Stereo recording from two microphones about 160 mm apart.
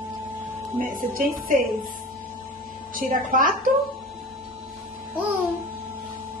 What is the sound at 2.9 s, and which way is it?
Speech, 60° right (ahead or behind).